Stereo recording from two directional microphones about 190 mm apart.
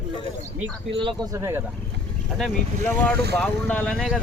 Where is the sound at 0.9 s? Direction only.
25° right (ahead or behind).